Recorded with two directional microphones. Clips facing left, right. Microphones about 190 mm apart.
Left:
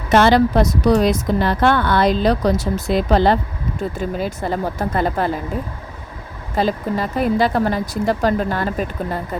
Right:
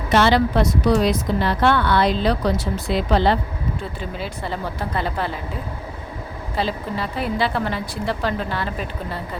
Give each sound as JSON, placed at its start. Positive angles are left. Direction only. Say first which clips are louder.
{"t": 0.1, "sound": "a woman's voice", "louder": "left 4 dB", "side_deg": 45}
{"t": 6.6, "sound": "a woman's voice", "louder": "left 5 dB", "side_deg": 45}